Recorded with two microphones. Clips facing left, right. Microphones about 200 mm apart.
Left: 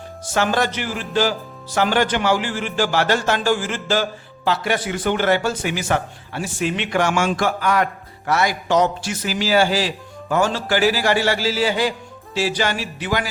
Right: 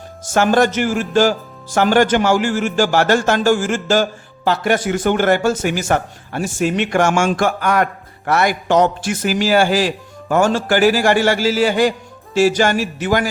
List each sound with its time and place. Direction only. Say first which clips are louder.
0.3 s a man's voice: right 6 dB; 45° right (ahead or behind)